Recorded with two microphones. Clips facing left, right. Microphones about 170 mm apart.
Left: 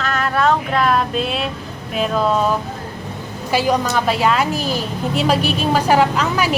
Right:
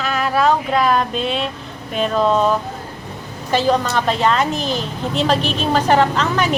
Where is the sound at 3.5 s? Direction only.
10° left (ahead or behind).